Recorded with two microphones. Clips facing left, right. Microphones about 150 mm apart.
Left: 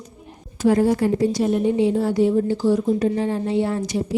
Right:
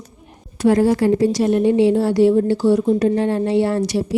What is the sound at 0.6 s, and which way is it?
A woman's voice, 90° right.